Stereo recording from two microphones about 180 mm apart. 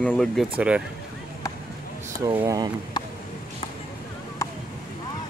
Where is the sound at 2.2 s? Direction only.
20° right (ahead or behind).